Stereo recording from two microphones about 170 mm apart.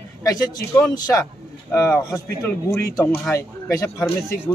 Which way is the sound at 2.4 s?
15° left (ahead or behind).